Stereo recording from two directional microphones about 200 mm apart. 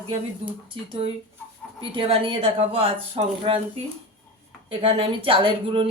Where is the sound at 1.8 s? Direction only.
25° right (ahead or behind).